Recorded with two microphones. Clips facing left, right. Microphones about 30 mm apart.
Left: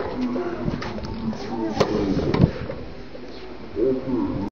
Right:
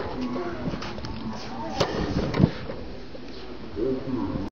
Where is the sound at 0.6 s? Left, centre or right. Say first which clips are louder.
Left 4 dB; centre.